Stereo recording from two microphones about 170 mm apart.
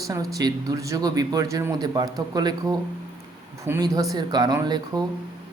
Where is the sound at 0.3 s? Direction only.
20° right (ahead or behind).